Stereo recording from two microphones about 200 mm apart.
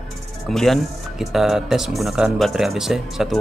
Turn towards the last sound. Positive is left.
turn(degrees=0)  # may be behind; listen again after turning